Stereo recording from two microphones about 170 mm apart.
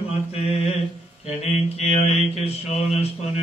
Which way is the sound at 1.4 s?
40° left (ahead or behind).